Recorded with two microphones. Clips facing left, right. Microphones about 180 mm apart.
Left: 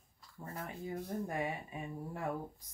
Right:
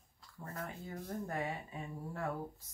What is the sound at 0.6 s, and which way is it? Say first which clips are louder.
Speech: left 6 dB; 15° left (ahead or behind).